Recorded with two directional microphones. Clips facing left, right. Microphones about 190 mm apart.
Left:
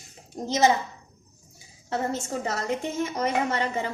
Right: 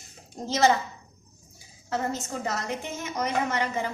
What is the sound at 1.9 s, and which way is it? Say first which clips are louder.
A woman's voice: left 1 dB; 30° left (ahead or behind).